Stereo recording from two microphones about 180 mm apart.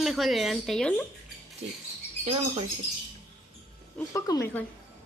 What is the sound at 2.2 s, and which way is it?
Speech, 30° right (ahead or behind).